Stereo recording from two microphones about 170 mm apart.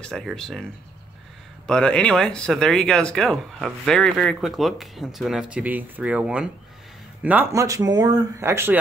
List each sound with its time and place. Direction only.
0.0 s speech: 5° left (ahead or behind)
1.7 s speech: 5° left (ahead or behind); by 8.7 s 15° right (ahead or behind)